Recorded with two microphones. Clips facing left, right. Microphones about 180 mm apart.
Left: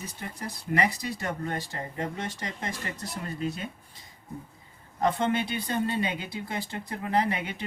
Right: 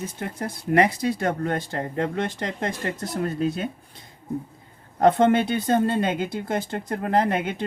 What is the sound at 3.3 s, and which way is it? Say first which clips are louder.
Speech: right 4 dB; 80° right.